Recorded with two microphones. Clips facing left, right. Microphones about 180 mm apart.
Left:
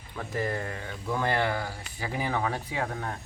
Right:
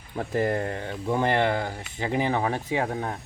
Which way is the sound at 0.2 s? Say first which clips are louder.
Right 6 dB; 30° right (ahead or behind).